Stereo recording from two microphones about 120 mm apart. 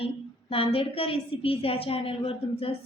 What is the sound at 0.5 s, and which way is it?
A woman's voice, 50° left (ahead or behind).